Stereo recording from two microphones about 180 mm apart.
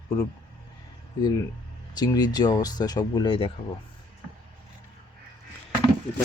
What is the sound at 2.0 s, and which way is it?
Speech, 20° left (ahead or behind).